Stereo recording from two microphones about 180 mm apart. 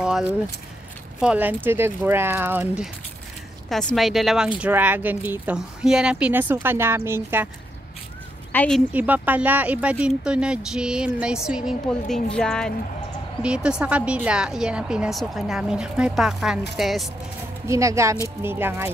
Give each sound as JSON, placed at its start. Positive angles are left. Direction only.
{"t": 0.0, "sound": "keys jangling", "side_deg": -5}
{"t": 1.2, "sound": "a woman's voice", "side_deg": -10}
{"t": 8.5, "sound": "a woman's voice", "side_deg": 5}
{"t": 8.9, "sound": "a woman's voice", "side_deg": -10}
{"t": 17.6, "sound": "speech", "side_deg": -15}